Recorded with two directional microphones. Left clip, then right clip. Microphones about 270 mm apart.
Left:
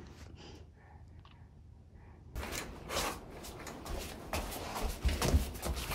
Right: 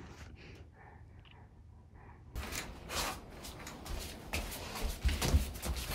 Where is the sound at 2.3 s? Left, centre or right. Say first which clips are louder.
Left 1 dB; centre.